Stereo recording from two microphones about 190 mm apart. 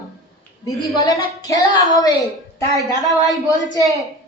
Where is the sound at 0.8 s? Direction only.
20° left (ahead or behind).